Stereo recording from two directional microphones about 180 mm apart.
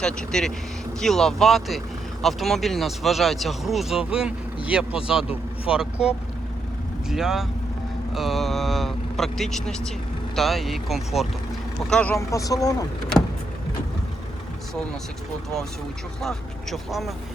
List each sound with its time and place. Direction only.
0.0 s speech: 5° left (ahead or behind); by 12.8 s 20° left (ahead or behind)
16.2 s speech: centre (ahead or behind)